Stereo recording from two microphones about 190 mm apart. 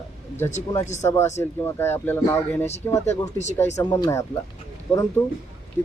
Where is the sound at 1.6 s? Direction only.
10° left (ahead or behind).